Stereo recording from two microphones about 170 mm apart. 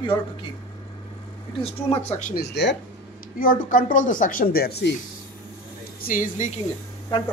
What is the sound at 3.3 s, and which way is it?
Speech, 55° left (ahead or behind).